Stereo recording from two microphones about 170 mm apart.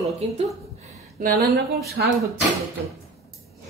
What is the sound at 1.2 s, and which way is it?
Speech, 60° right (ahead or behind).